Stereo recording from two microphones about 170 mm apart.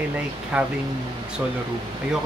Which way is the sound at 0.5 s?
5° right (ahead or behind).